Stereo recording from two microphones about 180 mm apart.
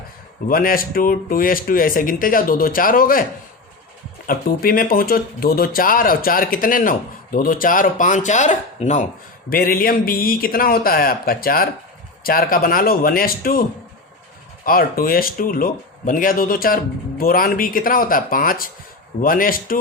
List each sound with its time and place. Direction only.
0.4 s speech: 55° left (ahead or behind)
4.3 s speech: 55° left (ahead or behind)
9.5 s speech: 55° left (ahead or behind)